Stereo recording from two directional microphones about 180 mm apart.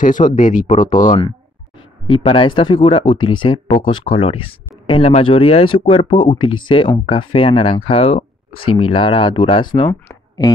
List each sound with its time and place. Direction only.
0.0 s speech: 45° left (ahead or behind)
2.0 s speech: 30° left (ahead or behind)
10.0 s a sound: 20° left (ahead or behind)